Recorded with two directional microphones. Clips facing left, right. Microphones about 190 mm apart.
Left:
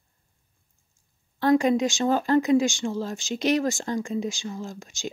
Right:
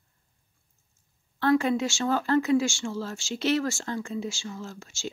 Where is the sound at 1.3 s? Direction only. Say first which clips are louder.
Left 3 dB; 15° left (ahead or behind).